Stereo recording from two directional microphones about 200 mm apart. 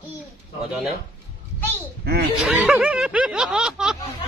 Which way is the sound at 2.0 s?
50° right (ahead or behind).